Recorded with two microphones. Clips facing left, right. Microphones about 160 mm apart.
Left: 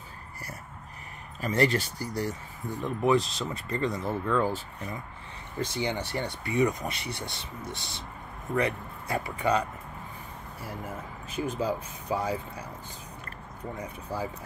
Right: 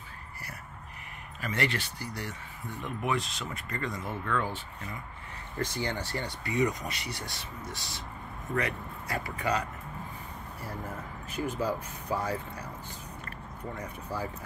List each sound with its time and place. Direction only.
1.4 s speech: 40° left (ahead or behind)
5.8 s speech: 20° left (ahead or behind)
11.3 s speech: 15° left (ahead or behind)
13.7 s speech: 10° left (ahead or behind)